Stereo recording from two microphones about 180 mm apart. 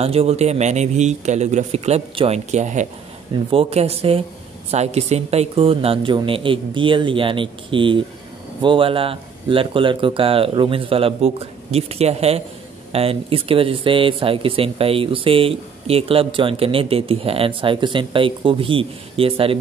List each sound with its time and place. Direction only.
0.0 s speech: 35° right (ahead or behind)